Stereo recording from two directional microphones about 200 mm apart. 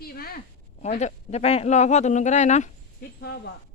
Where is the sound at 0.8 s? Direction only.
35° left (ahead or behind).